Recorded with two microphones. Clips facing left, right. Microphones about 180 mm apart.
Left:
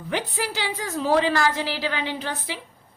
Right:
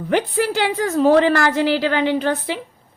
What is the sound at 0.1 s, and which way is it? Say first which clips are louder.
A woman's voice: right 9 dB; 55° right (ahead or behind).